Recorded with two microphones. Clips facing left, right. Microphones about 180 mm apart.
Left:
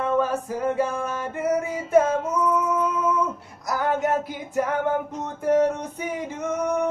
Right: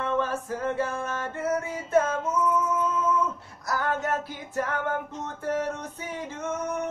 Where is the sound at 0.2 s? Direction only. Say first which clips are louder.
Left 4 dB; 15° left (ahead or behind).